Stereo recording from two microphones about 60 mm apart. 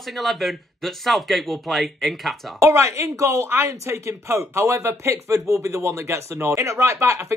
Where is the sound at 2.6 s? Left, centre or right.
Right.